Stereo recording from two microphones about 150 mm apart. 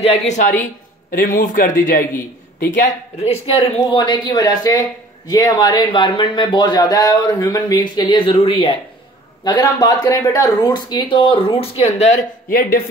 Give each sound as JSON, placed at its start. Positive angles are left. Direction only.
{"t": 0.0, "sound": "a woman's voice", "side_deg": 50}
{"t": 12.4, "sound": "a man's voice", "side_deg": 75}